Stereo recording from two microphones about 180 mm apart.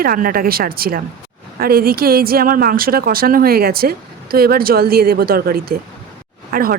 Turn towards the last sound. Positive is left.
turn(degrees=-55)  # may be behind; listen again after turning